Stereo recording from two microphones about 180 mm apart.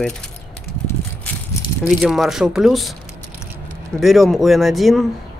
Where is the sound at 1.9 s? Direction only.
Centre (ahead or behind).